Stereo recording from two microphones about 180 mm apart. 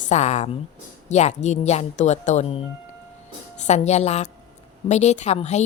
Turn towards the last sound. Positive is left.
turn(degrees=40)  # may be behind; listen again after turning